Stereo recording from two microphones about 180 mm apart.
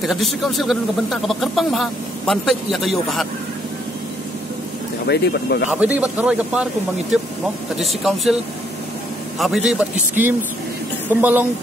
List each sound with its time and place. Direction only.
0.0 s speech: centre (ahead or behind)
5.0 s speech: 65° left (ahead or behind)
5.7 s a man's voice: 10° right (ahead or behind)
9.4 s a man's voice: centre (ahead or behind)